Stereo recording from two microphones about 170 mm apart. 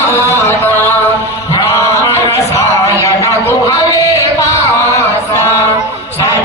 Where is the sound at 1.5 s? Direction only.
15° left (ahead or behind).